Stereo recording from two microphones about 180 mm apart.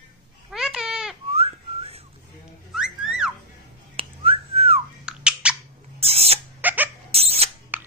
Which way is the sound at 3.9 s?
30° right (ahead or behind).